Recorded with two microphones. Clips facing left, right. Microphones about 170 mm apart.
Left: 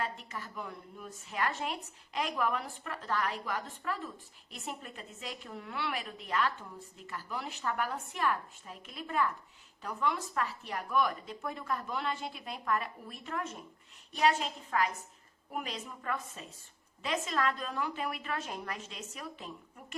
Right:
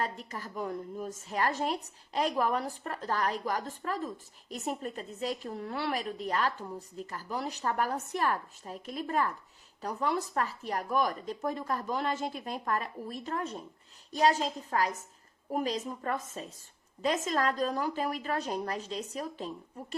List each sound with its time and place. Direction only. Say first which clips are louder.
0.0 s a woman's voice: right 3 dB; 40° right (ahead or behind)